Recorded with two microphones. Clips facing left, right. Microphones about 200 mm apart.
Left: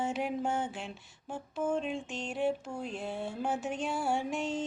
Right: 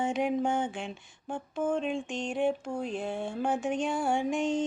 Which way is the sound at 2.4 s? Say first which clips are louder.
Right 2 dB; 50° right (ahead or behind).